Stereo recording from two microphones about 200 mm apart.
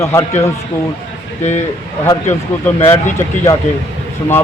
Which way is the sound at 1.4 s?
35° left (ahead or behind).